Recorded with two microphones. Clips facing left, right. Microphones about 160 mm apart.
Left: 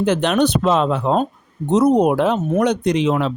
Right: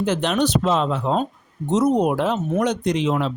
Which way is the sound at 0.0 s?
65° left (ahead or behind).